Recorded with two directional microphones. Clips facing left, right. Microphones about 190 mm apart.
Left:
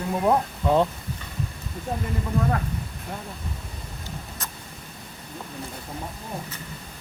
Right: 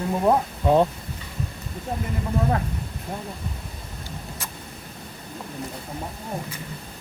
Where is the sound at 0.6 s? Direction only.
15° right (ahead or behind).